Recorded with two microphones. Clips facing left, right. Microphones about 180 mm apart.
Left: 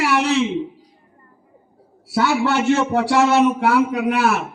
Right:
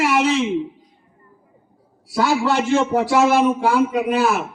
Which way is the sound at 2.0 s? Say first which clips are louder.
Even; 65° left (ahead or behind).